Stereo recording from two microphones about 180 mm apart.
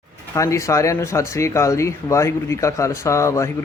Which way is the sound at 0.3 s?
15° left (ahead or behind).